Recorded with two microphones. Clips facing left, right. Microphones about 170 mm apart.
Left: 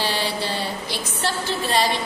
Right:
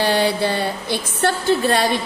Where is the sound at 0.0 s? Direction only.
55° right (ahead or behind).